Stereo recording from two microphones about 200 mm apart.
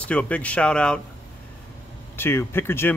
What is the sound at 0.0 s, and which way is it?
Speech, 5° left (ahead or behind).